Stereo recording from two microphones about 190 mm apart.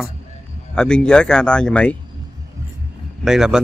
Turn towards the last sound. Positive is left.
turn(degrees=-5)  # may be behind; listen again after turning